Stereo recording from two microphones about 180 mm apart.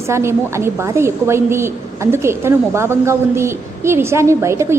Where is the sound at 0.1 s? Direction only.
15° right (ahead or behind).